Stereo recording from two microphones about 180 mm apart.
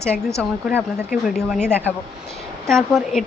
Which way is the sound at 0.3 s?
15° right (ahead or behind).